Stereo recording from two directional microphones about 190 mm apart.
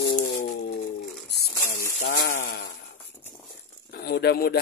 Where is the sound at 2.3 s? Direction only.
45° left (ahead or behind).